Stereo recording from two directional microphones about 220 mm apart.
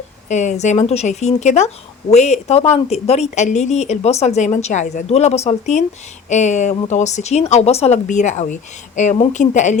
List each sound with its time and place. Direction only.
0.3 s speech: 35° left (ahead or behind)